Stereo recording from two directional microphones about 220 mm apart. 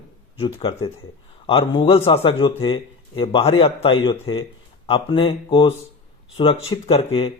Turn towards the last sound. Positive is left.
turn(degrees=25)  # may be behind; listen again after turning